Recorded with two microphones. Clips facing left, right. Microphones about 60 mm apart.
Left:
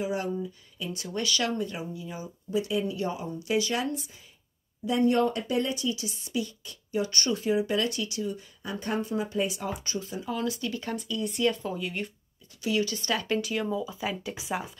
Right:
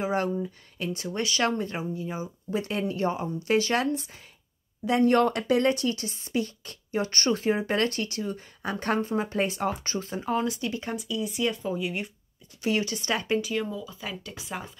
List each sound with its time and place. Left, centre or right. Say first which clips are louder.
0.0 s speech: right 3 dB; right
1.0 s speech: right 2 dB; right
1.6 s speech: right 2 dB; right
2.5 s speech: left 1 dB; right
8.6 s speech: right 4 dB; right
10.4 s speech: right 1 dB; right
11.0 s speech: left 2 dB; centre
12.6 s speech: right 1 dB; right
13.4 s speech: right 1 dB; centre
13.7 s speech: left 4 dB; centre